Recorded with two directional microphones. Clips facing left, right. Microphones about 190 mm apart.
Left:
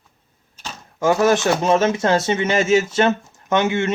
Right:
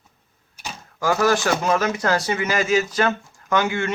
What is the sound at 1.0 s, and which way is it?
Speech, 20° left (ahead or behind).